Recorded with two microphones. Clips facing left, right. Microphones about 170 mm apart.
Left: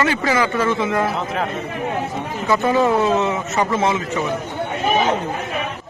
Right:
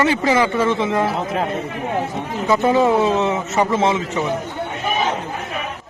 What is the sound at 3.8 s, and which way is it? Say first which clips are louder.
Speech: right 1 dB; 25° right (ahead or behind).